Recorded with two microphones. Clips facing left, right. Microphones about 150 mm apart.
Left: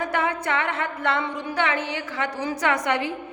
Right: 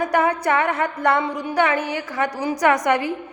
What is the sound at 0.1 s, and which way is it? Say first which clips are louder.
Music: right 6 dB; 40° right (ahead or behind).